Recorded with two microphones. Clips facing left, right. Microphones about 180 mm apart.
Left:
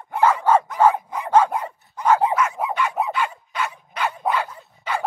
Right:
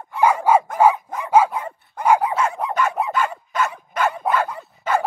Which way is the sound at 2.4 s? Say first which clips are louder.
Right 1 dB; 30° right (ahead or behind).